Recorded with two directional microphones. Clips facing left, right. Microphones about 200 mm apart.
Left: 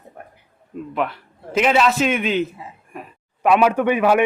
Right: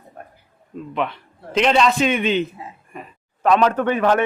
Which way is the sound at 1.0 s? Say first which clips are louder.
Even; 5° left (ahead or behind).